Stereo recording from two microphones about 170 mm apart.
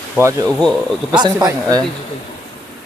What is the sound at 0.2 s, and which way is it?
Speech, 15° right (ahead or behind).